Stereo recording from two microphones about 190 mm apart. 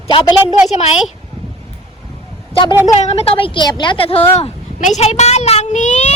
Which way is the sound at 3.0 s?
30° left (ahead or behind).